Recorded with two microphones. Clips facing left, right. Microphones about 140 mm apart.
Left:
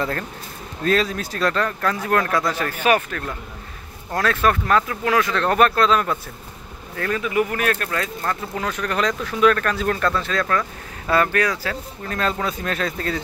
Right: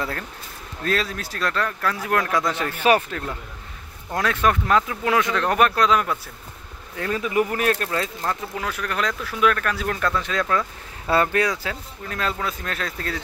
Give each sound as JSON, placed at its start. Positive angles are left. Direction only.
{"t": 0.8, "sound": "speech", "side_deg": 0}
{"t": 2.4, "sound": "speech", "side_deg": -20}
{"t": 4.2, "sound": "speech", "side_deg": -15}
{"t": 7.2, "sound": "speech", "side_deg": -30}
{"t": 11.1, "sound": "speech", "side_deg": -25}
{"t": 12.1, "sound": "speech", "side_deg": -5}